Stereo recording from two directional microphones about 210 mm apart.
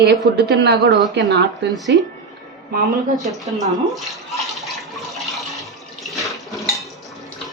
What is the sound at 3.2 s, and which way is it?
Speech, centre (ahead or behind).